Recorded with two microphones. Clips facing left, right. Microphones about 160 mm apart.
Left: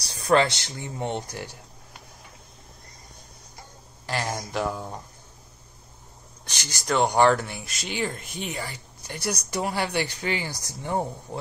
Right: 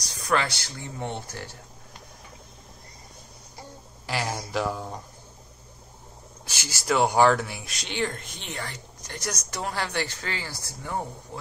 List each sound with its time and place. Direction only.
0.0 s speech: 30° left (ahead or behind)
4.0 s speech: 5° right (ahead or behind)
6.4 s speech: 5° right (ahead or behind); by 11.1 s 25° left (ahead or behind)